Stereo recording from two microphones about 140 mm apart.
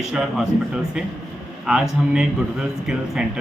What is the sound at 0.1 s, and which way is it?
Speech, 5° right (ahead or behind).